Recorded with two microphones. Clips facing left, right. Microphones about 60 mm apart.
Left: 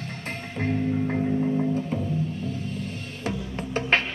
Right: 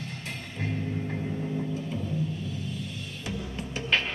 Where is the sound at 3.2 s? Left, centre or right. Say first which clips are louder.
Left 6 dB; left.